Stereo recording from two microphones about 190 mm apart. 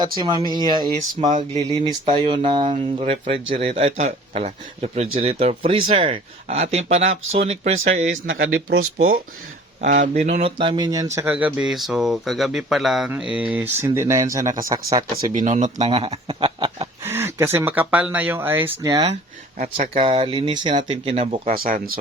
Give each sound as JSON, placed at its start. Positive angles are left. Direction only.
{"t": 0.2, "sound": "speech", "side_deg": -25}
{"t": 8.3, "sound": "speech", "side_deg": -75}
{"t": 9.8, "sound": "speech", "side_deg": -40}
{"t": 15.3, "sound": "speech", "side_deg": -40}
{"t": 17.0, "sound": "speech", "side_deg": -10}
{"t": 19.5, "sound": "speech", "side_deg": -40}
{"t": 21.4, "sound": "speech", "side_deg": -50}